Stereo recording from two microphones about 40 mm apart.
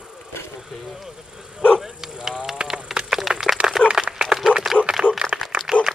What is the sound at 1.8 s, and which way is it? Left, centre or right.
Bow-wow, centre.